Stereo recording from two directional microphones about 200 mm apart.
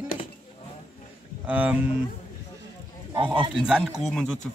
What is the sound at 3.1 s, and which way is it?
Speech, 25° right (ahead or behind).